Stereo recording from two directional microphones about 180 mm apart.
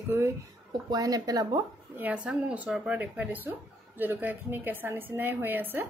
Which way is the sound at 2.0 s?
5° right (ahead or behind).